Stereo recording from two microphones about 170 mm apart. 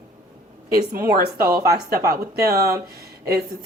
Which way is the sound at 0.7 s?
60° right (ahead or behind).